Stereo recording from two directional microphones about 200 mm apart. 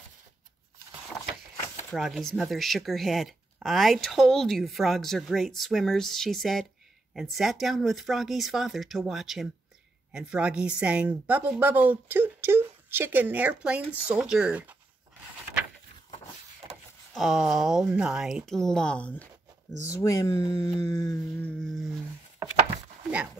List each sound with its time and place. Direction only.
1.9 s a woman's voice: centre (ahead or behind)
17.1 s speech: centre (ahead or behind)
20.0 s speech: 15° left (ahead or behind)
21.5 s speech: centre (ahead or behind)